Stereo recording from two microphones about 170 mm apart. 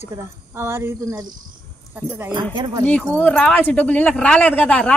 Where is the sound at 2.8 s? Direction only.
10° left (ahead or behind).